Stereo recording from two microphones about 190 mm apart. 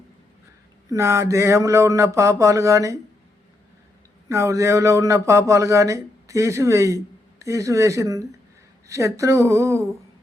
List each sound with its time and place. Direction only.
0.9 s speech: 15° right (ahead or behind)
4.3 s speech: 15° right (ahead or behind)